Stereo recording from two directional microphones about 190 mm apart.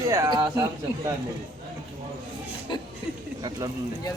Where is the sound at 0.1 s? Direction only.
20° right (ahead or behind).